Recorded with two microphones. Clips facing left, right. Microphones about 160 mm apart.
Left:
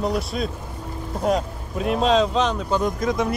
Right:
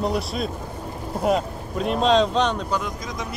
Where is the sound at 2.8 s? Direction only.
55° left (ahead or behind).